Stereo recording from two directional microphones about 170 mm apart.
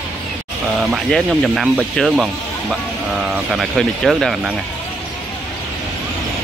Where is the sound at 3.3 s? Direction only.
Centre (ahead or behind).